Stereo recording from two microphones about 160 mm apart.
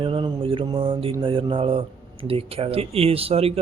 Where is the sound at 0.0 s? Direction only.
35° right (ahead or behind).